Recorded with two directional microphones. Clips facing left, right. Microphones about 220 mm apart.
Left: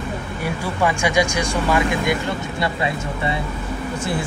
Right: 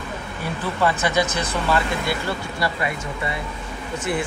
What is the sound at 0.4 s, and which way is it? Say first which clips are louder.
Speech: left 1 dB; 10° left (ahead or behind).